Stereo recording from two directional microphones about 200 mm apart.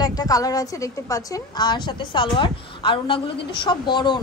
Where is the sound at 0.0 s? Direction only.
15° left (ahead or behind).